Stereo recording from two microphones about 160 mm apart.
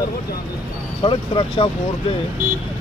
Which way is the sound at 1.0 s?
35° left (ahead or behind).